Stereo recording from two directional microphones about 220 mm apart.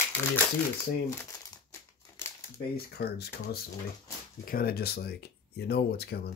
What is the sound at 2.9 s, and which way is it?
Speech, 45° left (ahead or behind).